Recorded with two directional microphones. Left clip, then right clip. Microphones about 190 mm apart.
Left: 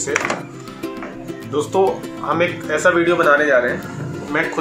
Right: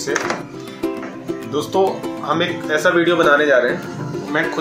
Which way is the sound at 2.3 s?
10° right (ahead or behind).